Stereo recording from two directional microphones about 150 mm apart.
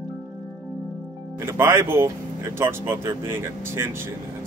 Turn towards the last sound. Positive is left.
turn(degrees=-15)  # may be behind; listen again after turning